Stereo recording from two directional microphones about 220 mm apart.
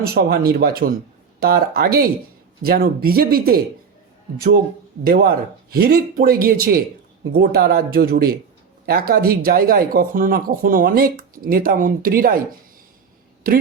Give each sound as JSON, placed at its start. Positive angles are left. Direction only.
{"t": 0.0, "sound": "speech", "side_deg": -45}